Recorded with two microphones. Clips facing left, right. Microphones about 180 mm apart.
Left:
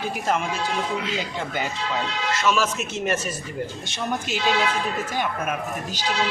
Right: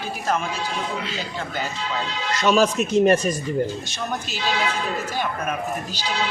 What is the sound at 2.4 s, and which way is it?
Speech, 35° right (ahead or behind).